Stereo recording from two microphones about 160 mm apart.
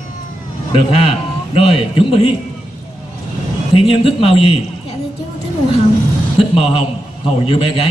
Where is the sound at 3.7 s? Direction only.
35° left (ahead or behind).